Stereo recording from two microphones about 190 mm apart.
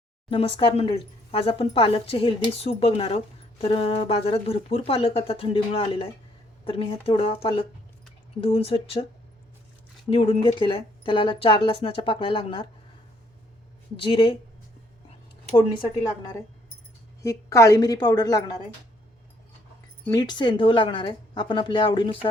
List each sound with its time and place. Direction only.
0.3 s speech: 30° left (ahead or behind)
10.1 s speech: 30° left (ahead or behind)
14.0 s speech: 25° left (ahead or behind)
17.2 s speech: 15° left (ahead or behind)
20.1 s speech: 20° left (ahead or behind)